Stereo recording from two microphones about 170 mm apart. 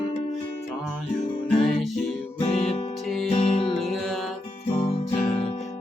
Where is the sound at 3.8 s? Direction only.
Centre (ahead or behind).